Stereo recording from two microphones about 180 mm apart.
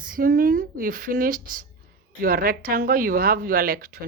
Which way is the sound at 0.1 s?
50° right (ahead or behind).